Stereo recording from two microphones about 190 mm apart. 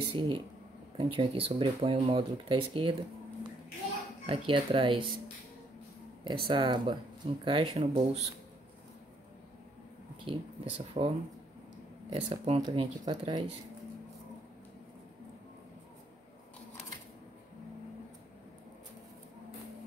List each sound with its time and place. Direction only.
0.1 s speech: 30° right (ahead or behind)
4.3 s speech: 25° right (ahead or behind)
6.2 s speech: 25° right (ahead or behind)
10.2 s speech: 30° right (ahead or behind)
12.1 s speech: 30° right (ahead or behind)